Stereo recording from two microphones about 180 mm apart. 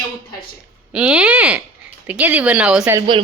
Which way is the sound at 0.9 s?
5° right (ahead or behind).